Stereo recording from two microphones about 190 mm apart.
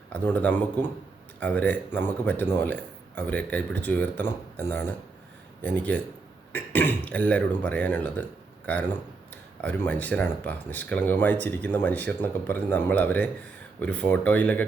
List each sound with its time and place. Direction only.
0.1 s speech: 10° left (ahead or behind)